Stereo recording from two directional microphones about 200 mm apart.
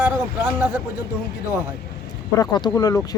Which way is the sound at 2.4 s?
20° left (ahead or behind).